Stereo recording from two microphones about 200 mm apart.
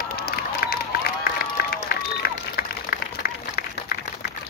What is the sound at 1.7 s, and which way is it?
Run, 50° left (ahead or behind).